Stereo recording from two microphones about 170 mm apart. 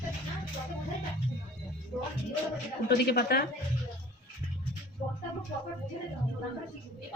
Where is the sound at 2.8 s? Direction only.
70° left (ahead or behind).